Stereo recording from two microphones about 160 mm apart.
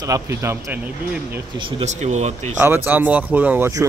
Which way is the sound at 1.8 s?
45° right (ahead or behind).